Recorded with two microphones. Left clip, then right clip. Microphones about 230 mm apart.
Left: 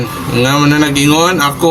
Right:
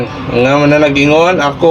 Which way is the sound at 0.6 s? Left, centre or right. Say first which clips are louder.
Right 3 dB; centre.